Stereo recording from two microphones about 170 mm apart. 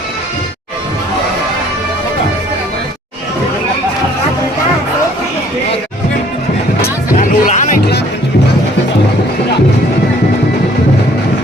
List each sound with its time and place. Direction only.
6.8 s music: 55° left (ahead or behind)